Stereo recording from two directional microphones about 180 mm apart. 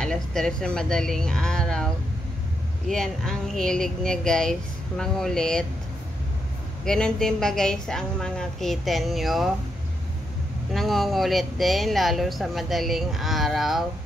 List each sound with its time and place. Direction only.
0.0 s speech: 5° left (ahead or behind)
2.9 s speech: 5° left (ahead or behind)
6.8 s speech: 5° left (ahead or behind)
10.7 s speech: centre (ahead or behind)